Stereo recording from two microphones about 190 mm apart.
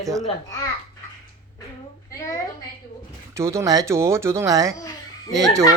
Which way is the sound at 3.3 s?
15° right (ahead or behind).